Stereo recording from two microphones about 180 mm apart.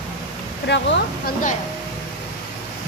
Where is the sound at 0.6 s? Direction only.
75° left (ahead or behind).